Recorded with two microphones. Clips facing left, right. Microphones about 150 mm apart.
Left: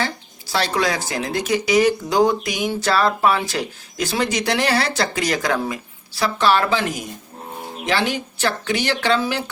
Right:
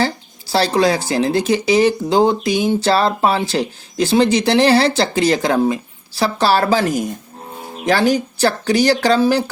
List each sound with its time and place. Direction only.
0.0 s speech: 35° right (ahead or behind)